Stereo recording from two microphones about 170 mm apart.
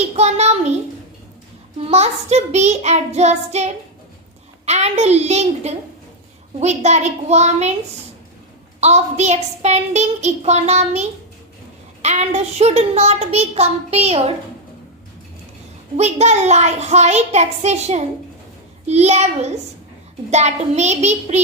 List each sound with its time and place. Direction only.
0.2 s a child's voice: 40° right (ahead or behind)
1.8 s a child's voice: 40° right (ahead or behind)
8.8 s a child's voice: 40° right (ahead or behind)
16.0 s a child's voice: 40° right (ahead or behind)